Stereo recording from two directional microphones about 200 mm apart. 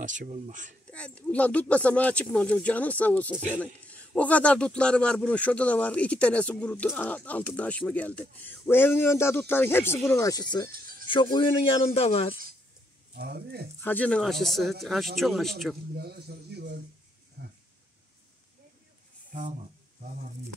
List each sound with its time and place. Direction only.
0.0 s speech: 40° right (ahead or behind)
0.8 s speech: 5° left (ahead or behind); by 12.4 s 30° left (ahead or behind)
13.1 s speech: 50° right (ahead or behind)
13.7 s speech: 10° left (ahead or behind)
16.0 s a sound: 55° right (ahead or behind)